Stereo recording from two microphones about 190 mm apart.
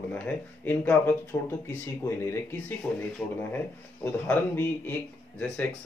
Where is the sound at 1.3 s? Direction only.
20° left (ahead or behind).